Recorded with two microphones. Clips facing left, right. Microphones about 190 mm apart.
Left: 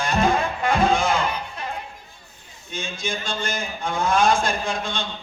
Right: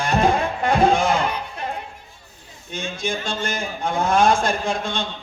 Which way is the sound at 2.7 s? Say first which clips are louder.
Right 3 dB; 60° right (ahead or behind).